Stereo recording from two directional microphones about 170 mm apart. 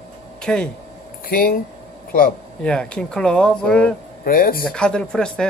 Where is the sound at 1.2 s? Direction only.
55° left (ahead or behind).